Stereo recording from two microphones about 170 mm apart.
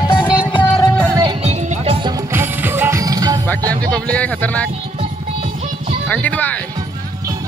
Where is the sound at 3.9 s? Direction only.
10° left (ahead or behind).